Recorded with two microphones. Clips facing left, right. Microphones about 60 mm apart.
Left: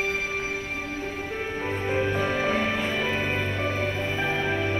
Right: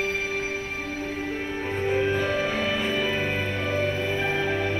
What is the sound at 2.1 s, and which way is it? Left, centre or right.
Music, left.